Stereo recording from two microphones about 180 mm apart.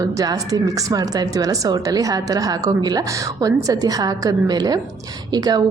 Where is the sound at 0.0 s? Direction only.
20° right (ahead or behind).